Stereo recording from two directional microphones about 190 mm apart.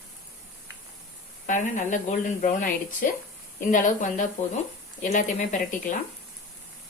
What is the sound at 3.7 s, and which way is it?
Speech, 45° left (ahead or behind).